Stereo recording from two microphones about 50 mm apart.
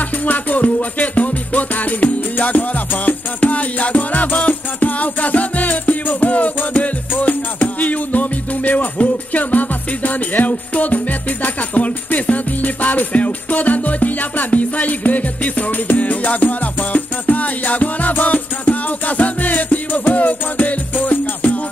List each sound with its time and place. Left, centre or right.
0.2 s music: left